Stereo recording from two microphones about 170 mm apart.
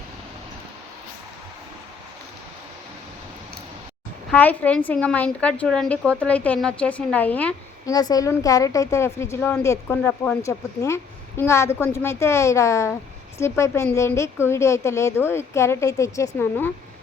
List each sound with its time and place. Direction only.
4.3 s a woman's voice: 10° left (ahead or behind)
7.9 s a woman's voice: 20° left (ahead or behind)